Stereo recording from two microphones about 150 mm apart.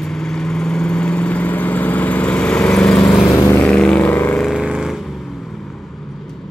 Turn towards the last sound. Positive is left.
turn(degrees=0)  # may be behind; listen again after turning